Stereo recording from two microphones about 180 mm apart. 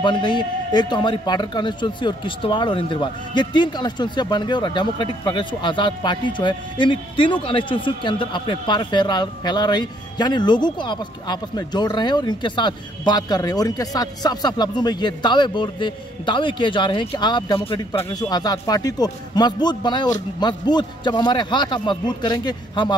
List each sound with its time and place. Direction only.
0.0 s a man's voice: 25° left (ahead or behind)
17.9 s a man's voice: 15° left (ahead or behind)